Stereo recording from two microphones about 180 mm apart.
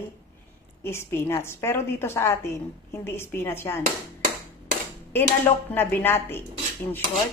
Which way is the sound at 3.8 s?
55° right (ahead or behind).